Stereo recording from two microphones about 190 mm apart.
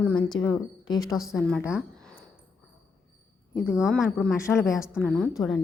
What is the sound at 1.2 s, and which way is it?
Speech, centre (ahead or behind).